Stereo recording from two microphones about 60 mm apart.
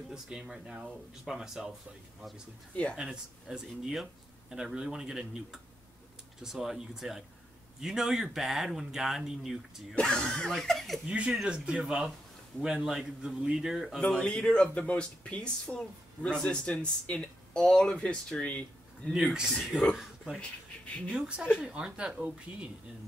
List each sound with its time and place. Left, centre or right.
0.1 s speech: centre
2.7 s speech: left
3.0 s speech: centre
9.9 s speech: centre
11.1 s speech: centre
11.8 s speech: centre
13.9 s speech: centre
19.1 s speech: centre
20.3 s speech: centre
21.1 s speech: centre